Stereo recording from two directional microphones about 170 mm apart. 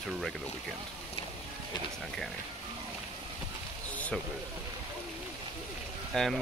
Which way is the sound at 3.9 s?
10° left (ahead or behind).